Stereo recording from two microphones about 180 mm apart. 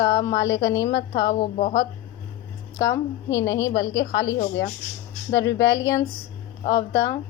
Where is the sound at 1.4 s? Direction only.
40° left (ahead or behind).